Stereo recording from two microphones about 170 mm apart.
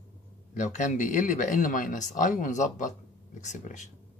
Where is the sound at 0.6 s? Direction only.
45° left (ahead or behind).